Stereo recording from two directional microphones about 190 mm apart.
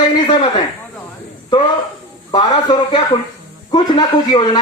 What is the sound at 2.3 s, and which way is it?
Speech, 20° left (ahead or behind).